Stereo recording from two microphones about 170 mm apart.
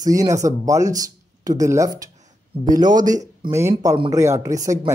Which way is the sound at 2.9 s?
50° right (ahead or behind).